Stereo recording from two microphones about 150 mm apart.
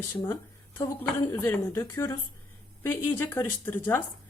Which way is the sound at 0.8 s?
20° left (ahead or behind).